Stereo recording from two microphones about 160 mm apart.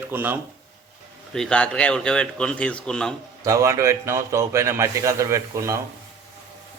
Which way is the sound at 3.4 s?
20° right (ahead or behind).